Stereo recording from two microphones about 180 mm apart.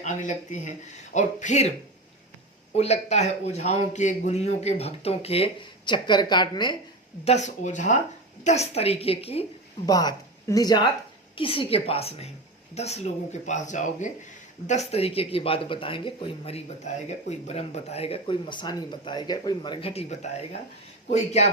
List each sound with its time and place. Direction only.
0.0 s speech: 40° left (ahead or behind)
2.7 s speech: 35° left (ahead or behind)
7.3 s speech: 40° left (ahead or behind)
9.8 s speech: 20° left (ahead or behind); by 21.5 s 40° left (ahead or behind)